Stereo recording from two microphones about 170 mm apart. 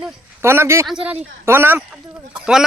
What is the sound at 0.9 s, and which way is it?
Speech, 5° right (ahead or behind).